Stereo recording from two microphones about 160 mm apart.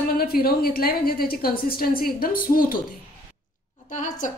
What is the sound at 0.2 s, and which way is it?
A woman's voice, 70° left (ahead or behind).